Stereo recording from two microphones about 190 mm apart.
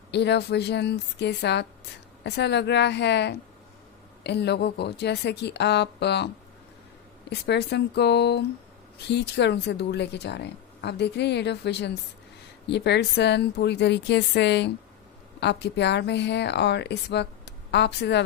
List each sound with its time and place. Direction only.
0.1 s speech: 65° left (ahead or behind)